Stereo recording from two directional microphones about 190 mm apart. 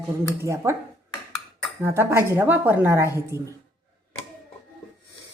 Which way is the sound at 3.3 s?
15° left (ahead or behind).